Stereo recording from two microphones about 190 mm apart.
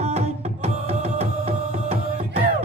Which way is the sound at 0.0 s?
35° right (ahead or behind).